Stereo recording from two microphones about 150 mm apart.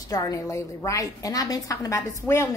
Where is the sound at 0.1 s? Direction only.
20° left (ahead or behind).